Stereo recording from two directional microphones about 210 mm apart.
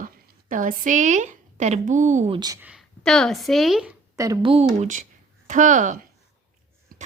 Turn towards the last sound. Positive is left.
turn(degrees=-40)  # may be behind; listen again after turning